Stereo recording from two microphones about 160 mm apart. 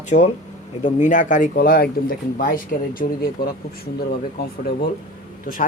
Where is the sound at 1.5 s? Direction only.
70° left (ahead or behind).